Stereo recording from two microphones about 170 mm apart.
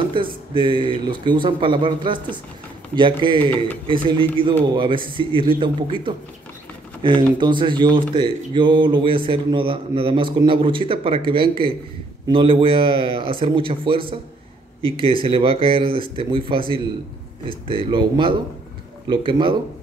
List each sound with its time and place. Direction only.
0.1 s a man's voice: 30° right (ahead or behind)